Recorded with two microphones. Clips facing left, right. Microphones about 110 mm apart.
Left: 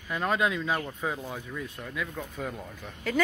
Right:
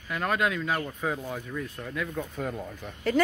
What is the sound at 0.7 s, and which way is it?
Speech, 5° left (ahead or behind).